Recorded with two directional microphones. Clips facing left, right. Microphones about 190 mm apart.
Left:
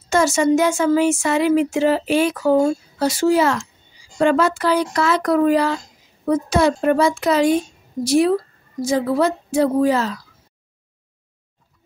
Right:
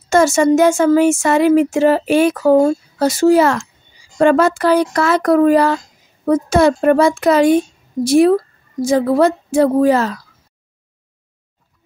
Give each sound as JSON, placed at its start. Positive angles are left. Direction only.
{"t": 0.1, "sound": "speech", "side_deg": -50}